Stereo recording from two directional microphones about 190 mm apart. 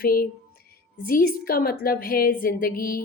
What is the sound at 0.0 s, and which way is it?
Speech, 50° left (ahead or behind).